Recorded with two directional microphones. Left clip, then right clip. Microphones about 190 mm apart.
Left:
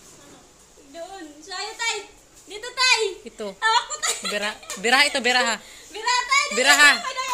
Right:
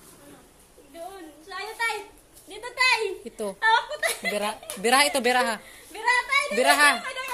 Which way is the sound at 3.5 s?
55° left (ahead or behind).